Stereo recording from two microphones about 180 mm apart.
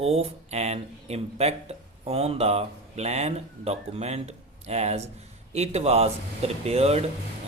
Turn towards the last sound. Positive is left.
turn(degrees=-35)  # may be behind; listen again after turning